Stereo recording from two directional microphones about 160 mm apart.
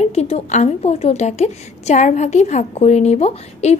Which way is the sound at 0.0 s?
40° left (ahead or behind).